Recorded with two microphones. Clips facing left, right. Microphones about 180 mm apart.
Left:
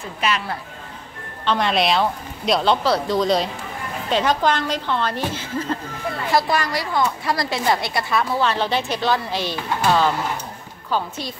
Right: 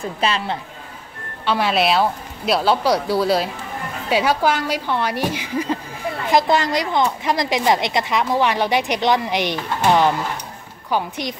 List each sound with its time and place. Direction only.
0.2 s speech: 30° right (ahead or behind)
1.4 s a woman's voice: 5° right (ahead or behind)